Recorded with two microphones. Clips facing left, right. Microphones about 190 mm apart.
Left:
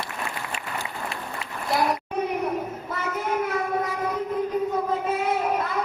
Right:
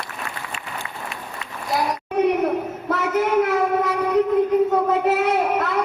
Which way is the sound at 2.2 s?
80° right.